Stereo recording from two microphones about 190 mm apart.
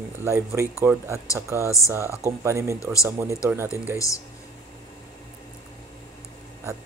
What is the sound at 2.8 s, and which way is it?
Speech, 15° left (ahead or behind).